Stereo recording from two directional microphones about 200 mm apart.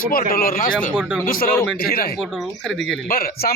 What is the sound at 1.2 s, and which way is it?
Speech, 45° left (ahead or behind).